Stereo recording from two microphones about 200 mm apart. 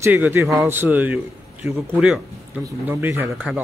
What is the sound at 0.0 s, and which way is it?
Speech, 10° right (ahead or behind).